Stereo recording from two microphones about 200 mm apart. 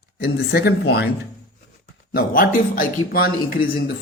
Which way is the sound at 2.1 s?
45° left (ahead or behind).